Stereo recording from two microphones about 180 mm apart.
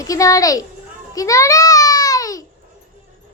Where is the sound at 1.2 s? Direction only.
20° left (ahead or behind).